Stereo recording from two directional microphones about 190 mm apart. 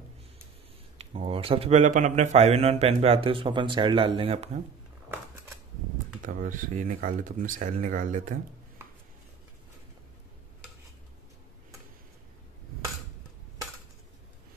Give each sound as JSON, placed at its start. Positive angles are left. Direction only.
{"t": 0.9, "sound": "speech", "side_deg": -30}
{"t": 6.2, "sound": "speech", "side_deg": -40}